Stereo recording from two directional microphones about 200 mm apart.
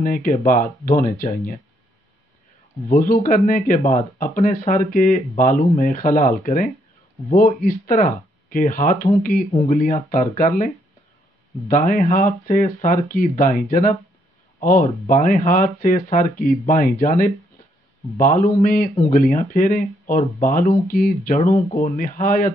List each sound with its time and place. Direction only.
0.0 s speech: 45° left (ahead or behind)
2.9 s speech: 40° left (ahead or behind)
9.5 s speech: 30° left (ahead or behind)
9.8 s speech: 40° left (ahead or behind)
21.6 s speech: 30° left (ahead or behind)
21.9 s speech: 45° left (ahead or behind)